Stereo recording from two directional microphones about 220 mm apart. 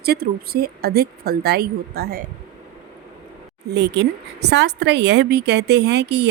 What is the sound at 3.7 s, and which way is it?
A woman's voice, 50° right (ahead or behind).